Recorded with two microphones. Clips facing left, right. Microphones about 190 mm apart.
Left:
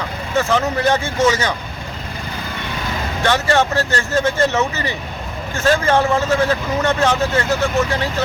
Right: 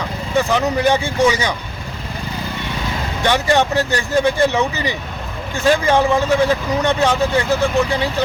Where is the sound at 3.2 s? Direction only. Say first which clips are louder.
Right 1 dB; 15° right (ahead or behind).